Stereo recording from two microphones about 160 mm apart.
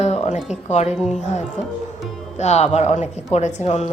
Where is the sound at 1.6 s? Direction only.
45° left (ahead or behind).